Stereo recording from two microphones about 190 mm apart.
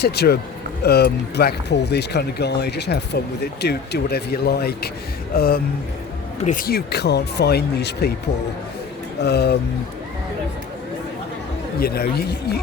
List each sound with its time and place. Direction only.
0.0 s speech: 55° left (ahead or behind)
9.2 s speech: 60° left (ahead or behind)
11.8 s speech: 55° left (ahead or behind)